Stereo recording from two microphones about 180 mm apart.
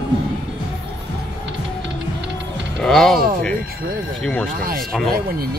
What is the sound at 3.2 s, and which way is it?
Speech, 55° right (ahead or behind).